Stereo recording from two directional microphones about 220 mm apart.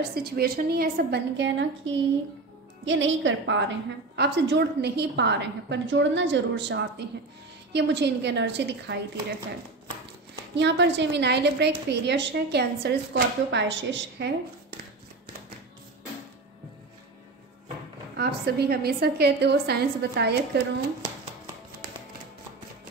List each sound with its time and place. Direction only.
0.1 s a woman's voice: 45° right (ahead or behind)
10.5 s a woman's voice: 50° right (ahead or behind)
18.1 s a woman's voice: 45° right (ahead or behind)